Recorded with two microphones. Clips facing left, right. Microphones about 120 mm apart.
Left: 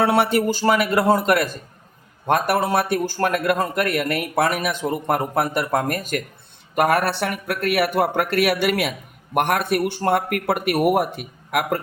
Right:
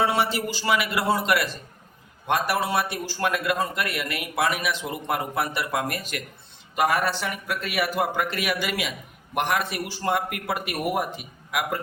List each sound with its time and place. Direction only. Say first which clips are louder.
0.0 s a man's voice: left 6 dB; 55° left (ahead or behind)
6.7 s speech: left 4 dB; 60° left (ahead or behind)